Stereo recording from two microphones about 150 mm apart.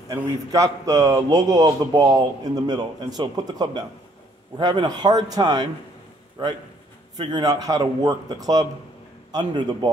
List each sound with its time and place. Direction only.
0.1 s a man's voice: 20° right (ahead or behind)